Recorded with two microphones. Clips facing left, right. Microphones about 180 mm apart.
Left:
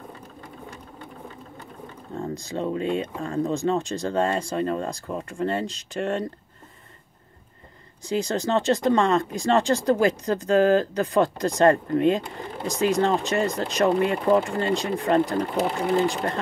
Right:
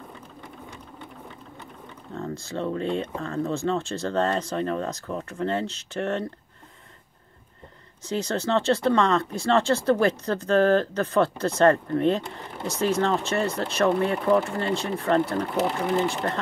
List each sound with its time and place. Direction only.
2.1 s speech: 15° left (ahead or behind)
8.1 s speech: 15° left (ahead or behind)